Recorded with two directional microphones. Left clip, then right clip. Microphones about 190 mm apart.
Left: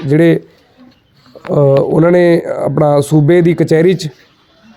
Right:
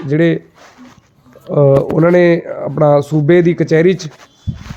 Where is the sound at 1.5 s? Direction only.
35° left (ahead or behind).